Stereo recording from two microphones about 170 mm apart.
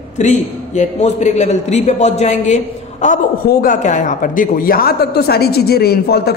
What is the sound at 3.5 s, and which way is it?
A woman's voice, 55° left (ahead or behind).